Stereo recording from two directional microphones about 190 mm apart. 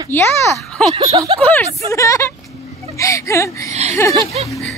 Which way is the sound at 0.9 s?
30° right (ahead or behind).